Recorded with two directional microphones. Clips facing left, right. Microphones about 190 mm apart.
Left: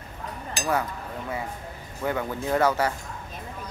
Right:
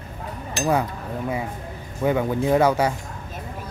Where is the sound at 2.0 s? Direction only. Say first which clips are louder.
Right 7 dB; 15° right (ahead or behind).